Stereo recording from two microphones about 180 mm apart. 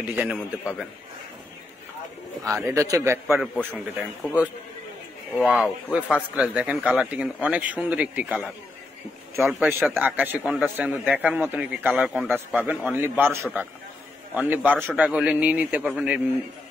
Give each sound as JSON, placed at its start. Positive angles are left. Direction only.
{"t": 0.1, "sound": "speech", "side_deg": -5}
{"t": 2.4, "sound": "a man's voice", "side_deg": -15}
{"t": 3.3, "sound": "a man's voice", "side_deg": 0}
{"t": 9.5, "sound": "a man's voice", "side_deg": -10}